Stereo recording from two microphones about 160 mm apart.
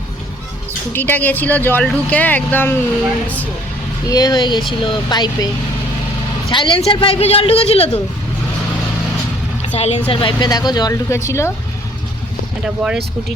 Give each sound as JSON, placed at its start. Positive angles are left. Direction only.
{"t": 0.9, "sound": "speech", "side_deg": 10}
{"t": 4.1, "sound": "speech", "side_deg": 25}
{"t": 6.5, "sound": "speech", "side_deg": 30}
{"t": 9.6, "sound": "a sound", "side_deg": 45}
{"t": 10.1, "sound": "speech", "side_deg": 30}
{"t": 12.6, "sound": "speech", "side_deg": -5}